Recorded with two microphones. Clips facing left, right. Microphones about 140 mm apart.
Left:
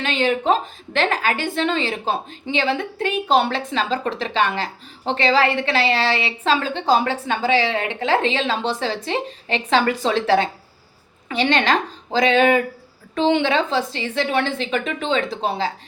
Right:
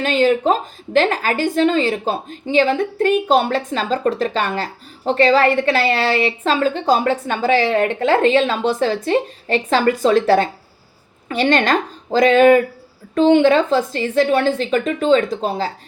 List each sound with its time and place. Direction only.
0.0 s a woman's voice: 40° right (ahead or behind)